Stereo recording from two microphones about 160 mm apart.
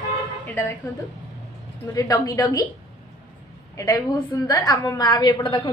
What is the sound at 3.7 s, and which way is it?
A woman's voice, 20° left (ahead or behind).